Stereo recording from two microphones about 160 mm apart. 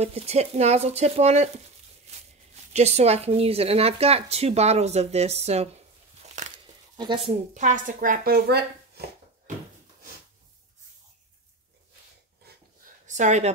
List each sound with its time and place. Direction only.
0.0 s speech: 40° right (ahead or behind)
2.1 s a sound: 40° right (ahead or behind)
2.7 s speech: 45° right (ahead or behind)
6.2 s crumpling: 50° right (ahead or behind)
7.0 s speech: 30° right (ahead or behind)
7.5 s speech: 50° right (ahead or behind); by 9.0 s 85° right
13.0 s a sound: 50° right (ahead or behind)